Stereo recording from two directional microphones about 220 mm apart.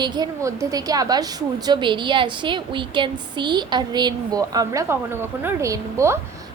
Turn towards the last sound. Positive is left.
turn(degrees=-15)  # may be behind; listen again after turning